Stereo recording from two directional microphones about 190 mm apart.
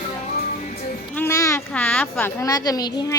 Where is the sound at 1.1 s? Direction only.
15° left (ahead or behind).